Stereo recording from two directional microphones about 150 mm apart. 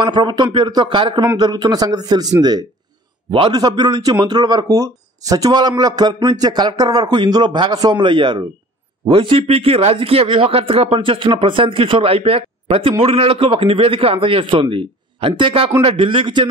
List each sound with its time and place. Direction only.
0.0 s a man's voice: 30° right (ahead or behind)